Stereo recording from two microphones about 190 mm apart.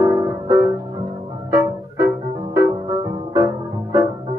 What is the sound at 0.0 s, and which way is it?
Music, 20° right (ahead or behind).